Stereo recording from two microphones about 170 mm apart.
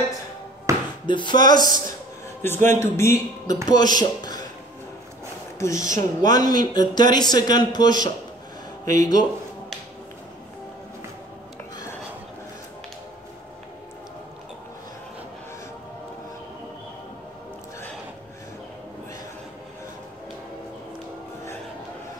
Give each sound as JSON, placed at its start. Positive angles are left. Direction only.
{"t": 0.7, "sound": "a sound", "side_deg": -15}
{"t": 1.0, "sound": "speech", "side_deg": 25}
{"t": 2.4, "sound": "a man's voice", "side_deg": 15}
{"t": 5.6, "sound": "speech", "side_deg": 20}
{"t": 5.9, "sound": "speech", "side_deg": -50}
{"t": 6.3, "sound": "speech", "side_deg": 25}
{"t": 8.8, "sound": "speech", "side_deg": -50}